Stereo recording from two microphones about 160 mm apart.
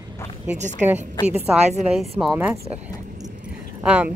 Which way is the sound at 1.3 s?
40° right (ahead or behind).